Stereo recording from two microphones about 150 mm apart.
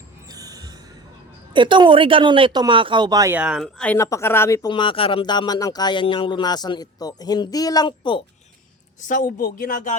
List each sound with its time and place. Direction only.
0.3 s a sound: 25° right (ahead or behind)
1.5 s speech: 35° right (ahead or behind)
3.3 s speech: 5° right (ahead or behind)
3.9 s speech: 20° left (ahead or behind)
4.7 s speech: 35° left (ahead or behind)
9.0 s speech: 60° left (ahead or behind)